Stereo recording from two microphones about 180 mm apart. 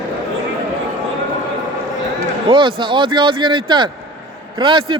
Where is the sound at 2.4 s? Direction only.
25° right (ahead or behind).